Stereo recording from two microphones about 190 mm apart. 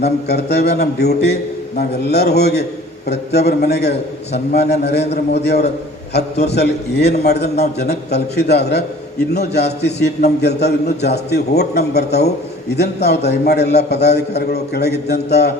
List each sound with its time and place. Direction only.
0.0 s a man's voice: 60° left (ahead or behind)